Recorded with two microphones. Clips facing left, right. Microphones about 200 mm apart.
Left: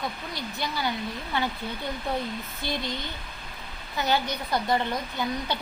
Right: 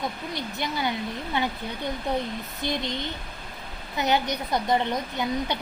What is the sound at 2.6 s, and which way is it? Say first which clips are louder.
A woman's voice: right 3 dB; 20° right (ahead or behind).